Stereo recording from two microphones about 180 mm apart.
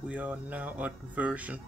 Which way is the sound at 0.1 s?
10° right (ahead or behind).